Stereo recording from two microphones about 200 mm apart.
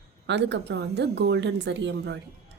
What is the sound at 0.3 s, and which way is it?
Speech, 60° right (ahead or behind).